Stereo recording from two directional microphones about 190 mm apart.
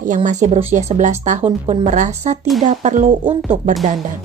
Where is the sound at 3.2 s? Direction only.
25° right (ahead or behind).